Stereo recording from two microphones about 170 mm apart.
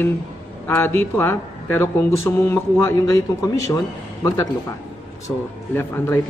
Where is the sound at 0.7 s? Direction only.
15° left (ahead or behind).